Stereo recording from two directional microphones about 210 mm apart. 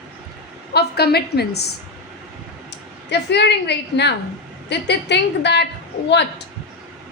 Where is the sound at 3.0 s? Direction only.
55° left (ahead or behind).